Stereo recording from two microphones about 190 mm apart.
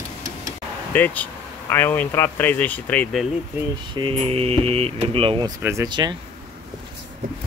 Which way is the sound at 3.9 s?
30° right (ahead or behind).